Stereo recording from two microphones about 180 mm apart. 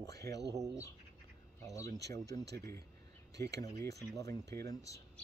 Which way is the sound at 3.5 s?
20° left (ahead or behind).